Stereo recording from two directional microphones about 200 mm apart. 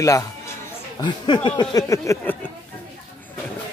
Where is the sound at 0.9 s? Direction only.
20° left (ahead or behind).